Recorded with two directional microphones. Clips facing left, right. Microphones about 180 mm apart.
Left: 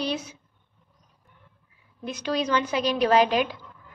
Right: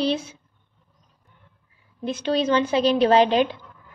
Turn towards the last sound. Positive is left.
turn(degrees=-30)  # may be behind; listen again after turning